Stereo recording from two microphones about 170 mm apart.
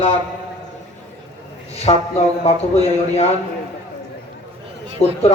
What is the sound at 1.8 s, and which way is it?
A man's voice, 40° left (ahead or behind).